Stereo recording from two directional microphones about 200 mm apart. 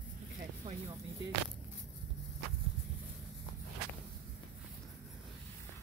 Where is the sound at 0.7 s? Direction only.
25° right (ahead or behind).